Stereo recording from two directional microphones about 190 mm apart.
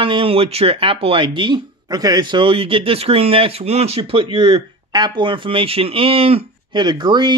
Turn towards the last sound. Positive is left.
turn(degrees=-25)  # may be behind; listen again after turning